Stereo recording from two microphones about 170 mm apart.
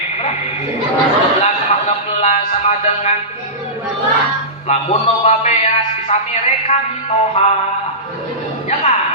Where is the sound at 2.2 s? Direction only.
40° left (ahead or behind).